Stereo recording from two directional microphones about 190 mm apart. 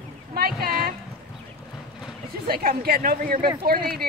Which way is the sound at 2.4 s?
50° right (ahead or behind).